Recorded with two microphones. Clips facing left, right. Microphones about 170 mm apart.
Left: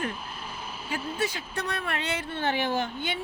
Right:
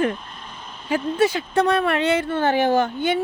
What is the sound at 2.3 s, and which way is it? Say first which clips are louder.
Speech: right 7 dB; 45° right (ahead or behind).